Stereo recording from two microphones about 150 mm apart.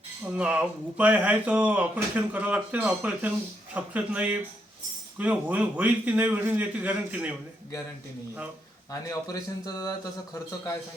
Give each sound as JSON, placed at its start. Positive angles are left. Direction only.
{"t": 0.3, "sound": "speech", "side_deg": -5}
{"t": 8.9, "sound": "speech", "side_deg": 25}